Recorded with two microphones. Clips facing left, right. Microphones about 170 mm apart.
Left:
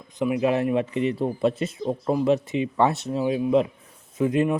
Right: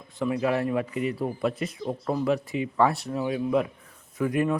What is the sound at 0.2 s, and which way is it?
Speech, 15° left (ahead or behind).